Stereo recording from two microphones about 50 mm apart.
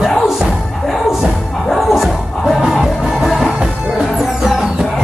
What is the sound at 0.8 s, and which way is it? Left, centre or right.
Music, centre.